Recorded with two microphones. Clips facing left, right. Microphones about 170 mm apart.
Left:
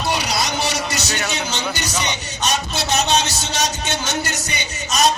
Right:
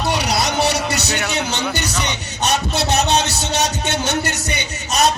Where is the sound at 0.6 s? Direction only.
60° right (ahead or behind).